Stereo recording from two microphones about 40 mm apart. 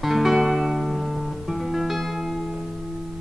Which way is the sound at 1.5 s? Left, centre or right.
Centre.